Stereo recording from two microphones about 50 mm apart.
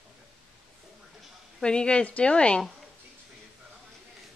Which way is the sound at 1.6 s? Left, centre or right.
Centre.